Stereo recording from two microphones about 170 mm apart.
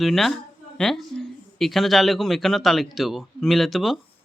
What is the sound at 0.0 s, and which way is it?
Speech, centre (ahead or behind).